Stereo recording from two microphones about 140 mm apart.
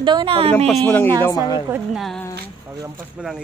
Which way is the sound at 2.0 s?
Centre (ahead or behind).